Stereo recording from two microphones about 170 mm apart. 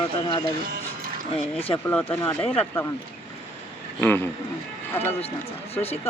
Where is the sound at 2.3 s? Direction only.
35° left (ahead or behind).